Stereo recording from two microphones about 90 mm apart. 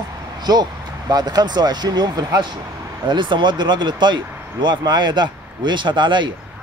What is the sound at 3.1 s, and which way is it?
Speech, 60° right (ahead or behind).